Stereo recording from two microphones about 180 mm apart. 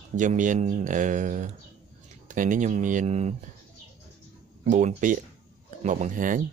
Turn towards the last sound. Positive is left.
turn(degrees=-45)  # may be behind; listen again after turning